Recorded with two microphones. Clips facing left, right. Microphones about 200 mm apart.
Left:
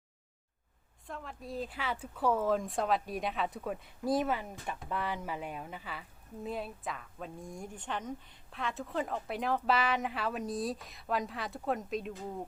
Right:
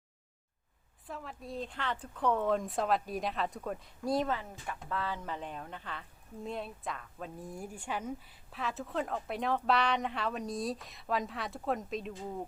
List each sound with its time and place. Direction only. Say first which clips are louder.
1.0 s a woman's voice: even; centre (ahead or behind)
4.4 s a woman's voice: left 2 dB; 15° left (ahead or behind); by 12.5 s centre (ahead or behind)